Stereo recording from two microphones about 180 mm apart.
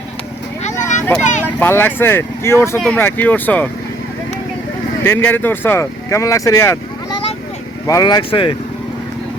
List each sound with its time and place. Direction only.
0.6 s a sound: 40° left (ahead or behind)
1.5 s speech: 10° left (ahead or behind)
5.0 s speech: 10° left (ahead or behind)
7.9 s speech: 20° left (ahead or behind)